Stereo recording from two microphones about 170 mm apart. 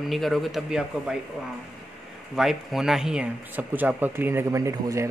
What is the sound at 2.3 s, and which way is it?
Speech, centre (ahead or behind).